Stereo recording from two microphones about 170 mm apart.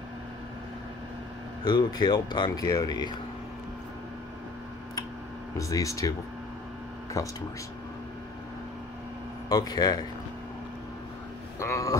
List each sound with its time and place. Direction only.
1.6 s speech: 25° left (ahead or behind)
5.6 s speech: 20° left (ahead or behind)
7.2 s speech: 20° left (ahead or behind)
9.5 s speech: 20° left (ahead or behind)
11.6 s speech: 20° left (ahead or behind)